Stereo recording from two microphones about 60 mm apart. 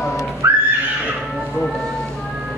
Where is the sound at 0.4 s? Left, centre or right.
Right.